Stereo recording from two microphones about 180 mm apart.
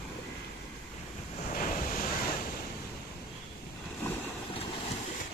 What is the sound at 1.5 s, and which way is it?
Waves, 50° left (ahead or behind).